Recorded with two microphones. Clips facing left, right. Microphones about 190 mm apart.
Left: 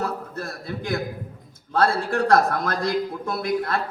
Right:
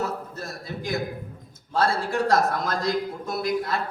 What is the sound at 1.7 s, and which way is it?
Speech, 60° left (ahead or behind).